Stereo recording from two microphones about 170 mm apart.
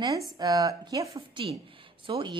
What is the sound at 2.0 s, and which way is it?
Speech, 30° right (ahead or behind).